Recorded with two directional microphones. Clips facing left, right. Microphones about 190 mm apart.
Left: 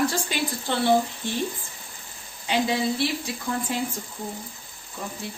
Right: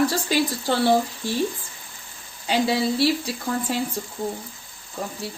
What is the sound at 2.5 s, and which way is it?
Speech, 35° right (ahead or behind).